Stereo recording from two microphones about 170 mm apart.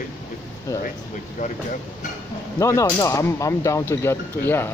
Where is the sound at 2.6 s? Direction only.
20° left (ahead or behind).